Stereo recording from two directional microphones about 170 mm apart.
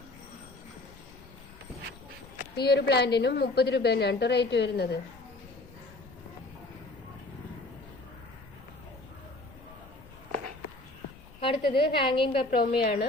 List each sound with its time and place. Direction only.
2.6 s a woman's voice: 75° left (ahead or behind)
11.3 s a woman's voice: 30° left (ahead or behind)
12.5 s a woman's voice: 65° left (ahead or behind)